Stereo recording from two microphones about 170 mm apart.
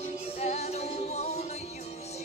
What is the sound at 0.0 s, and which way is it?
Music, 40° left (ahead or behind).